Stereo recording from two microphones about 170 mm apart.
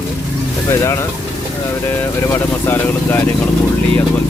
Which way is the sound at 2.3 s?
15° left (ahead or behind).